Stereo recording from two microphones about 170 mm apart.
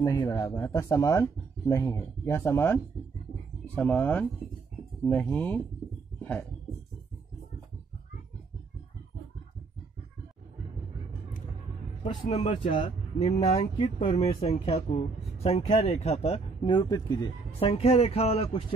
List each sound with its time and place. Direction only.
0.0 s speech: 20° left (ahead or behind)
5.3 s speech: 10° left (ahead or behind)
12.3 s speech: 40° left (ahead or behind); by 17.3 s 20° left (ahead or behind)
17.6 s speech: 35° left (ahead or behind)